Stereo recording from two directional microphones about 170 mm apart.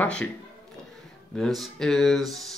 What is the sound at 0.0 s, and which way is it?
Speech, 5° left (ahead or behind).